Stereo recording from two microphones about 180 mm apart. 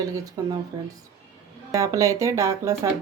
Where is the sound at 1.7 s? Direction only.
20° right (ahead or behind).